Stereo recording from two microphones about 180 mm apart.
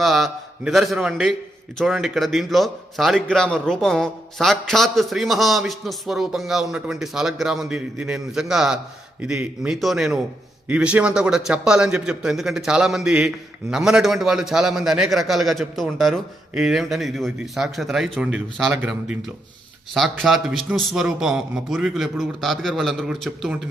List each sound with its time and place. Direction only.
0.0 s a man's voice: centre (ahead or behind)